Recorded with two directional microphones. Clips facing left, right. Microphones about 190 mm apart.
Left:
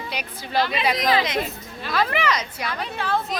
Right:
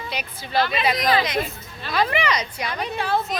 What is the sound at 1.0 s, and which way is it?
Speech, 20° left (ahead or behind).